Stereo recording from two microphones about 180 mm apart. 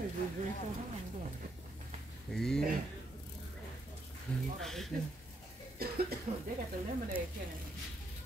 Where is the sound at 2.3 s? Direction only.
5° left (ahead or behind).